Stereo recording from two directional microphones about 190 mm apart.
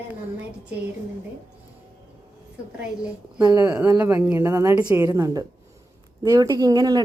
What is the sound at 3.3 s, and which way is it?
A woman's voice, 15° right (ahead or behind).